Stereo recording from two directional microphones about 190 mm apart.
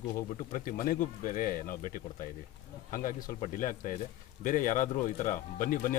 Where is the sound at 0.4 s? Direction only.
45° left (ahead or behind).